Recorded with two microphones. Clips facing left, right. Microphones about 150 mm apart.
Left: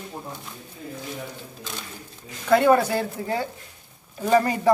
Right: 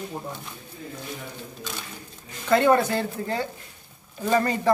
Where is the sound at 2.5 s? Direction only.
5° left (ahead or behind).